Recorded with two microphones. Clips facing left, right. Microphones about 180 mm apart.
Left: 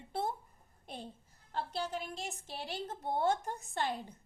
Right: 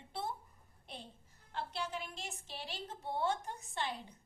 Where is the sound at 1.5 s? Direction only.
40° left (ahead or behind).